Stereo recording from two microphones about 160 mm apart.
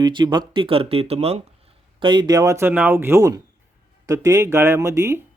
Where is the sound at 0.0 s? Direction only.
30° right (ahead or behind).